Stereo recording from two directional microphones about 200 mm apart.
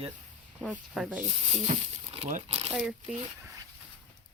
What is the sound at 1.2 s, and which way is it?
Speech, 30° right (ahead or behind).